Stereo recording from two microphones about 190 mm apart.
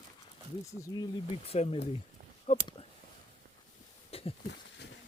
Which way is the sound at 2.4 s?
30° left (ahead or behind).